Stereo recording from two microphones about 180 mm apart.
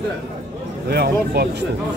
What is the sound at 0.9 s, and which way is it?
Speech, 60° right (ahead or behind).